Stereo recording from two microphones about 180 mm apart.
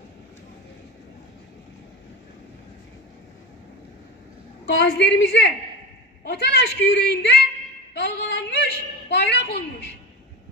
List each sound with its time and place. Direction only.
4.6 s a woman's voice: 75° left (ahead or behind)
7.9 s music: 70° left (ahead or behind)
9.1 s a woman's voice: 70° left (ahead or behind)